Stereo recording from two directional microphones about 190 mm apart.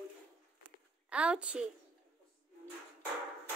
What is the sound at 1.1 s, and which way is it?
Speech, 5° right (ahead or behind).